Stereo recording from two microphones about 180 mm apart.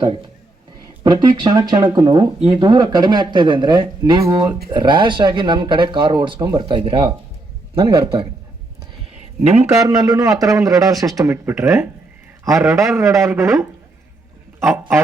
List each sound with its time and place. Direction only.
1.0 s speech: 25° right (ahead or behind)
9.4 s a man's voice: 35° right (ahead or behind)
9.7 s speech: 20° right (ahead or behind)